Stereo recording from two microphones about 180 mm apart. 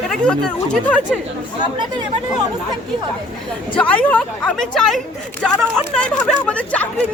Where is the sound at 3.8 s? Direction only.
5° left (ahead or behind).